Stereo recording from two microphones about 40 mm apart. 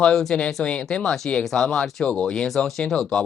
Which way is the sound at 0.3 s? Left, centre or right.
Left.